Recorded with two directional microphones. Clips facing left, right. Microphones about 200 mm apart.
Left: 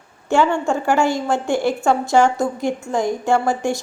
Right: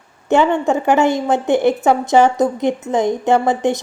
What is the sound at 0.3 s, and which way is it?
A woman's voice, 20° right (ahead or behind).